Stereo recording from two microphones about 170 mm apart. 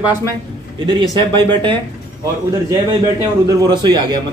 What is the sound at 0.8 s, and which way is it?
Speech, 25° right (ahead or behind).